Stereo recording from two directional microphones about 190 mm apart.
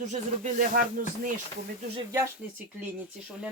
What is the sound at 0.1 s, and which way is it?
Speech, 40° right (ahead or behind).